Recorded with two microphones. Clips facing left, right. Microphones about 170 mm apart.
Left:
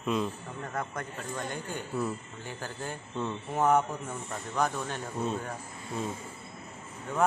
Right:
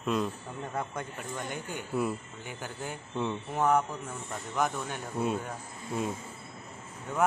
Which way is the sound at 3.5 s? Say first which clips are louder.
Left 2 dB; 5° left (ahead or behind).